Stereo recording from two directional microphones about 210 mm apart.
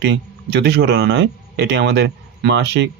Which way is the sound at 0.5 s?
55° right (ahead or behind).